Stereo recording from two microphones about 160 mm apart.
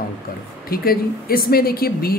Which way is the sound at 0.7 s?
70° left (ahead or behind).